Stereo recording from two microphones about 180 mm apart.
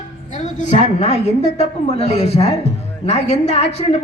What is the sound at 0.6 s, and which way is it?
A woman's voice, 40° left (ahead or behind).